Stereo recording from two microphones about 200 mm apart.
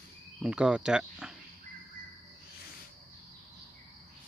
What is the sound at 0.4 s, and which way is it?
Speech, 5° right (ahead or behind).